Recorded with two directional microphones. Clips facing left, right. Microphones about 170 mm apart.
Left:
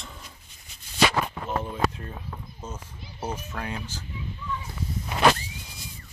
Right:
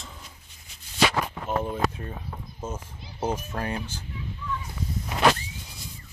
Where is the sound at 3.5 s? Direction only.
35° right (ahead or behind).